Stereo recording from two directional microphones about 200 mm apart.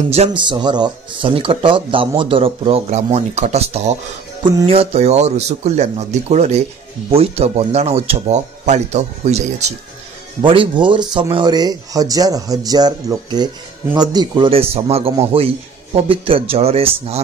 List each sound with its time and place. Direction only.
0.1 s speech: 30° right (ahead or behind)